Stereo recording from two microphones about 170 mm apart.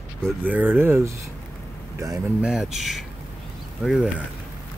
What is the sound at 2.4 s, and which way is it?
Speech, 5° right (ahead or behind).